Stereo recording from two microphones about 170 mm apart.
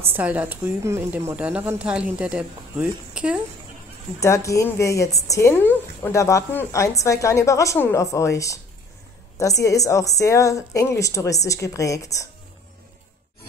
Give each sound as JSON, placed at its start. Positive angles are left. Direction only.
{"t": 0.0, "sound": "a woman's voice", "side_deg": -10}
{"t": 4.2, "sound": "a woman's voice", "side_deg": 20}
{"t": 9.6, "sound": "a woman's voice", "side_deg": 20}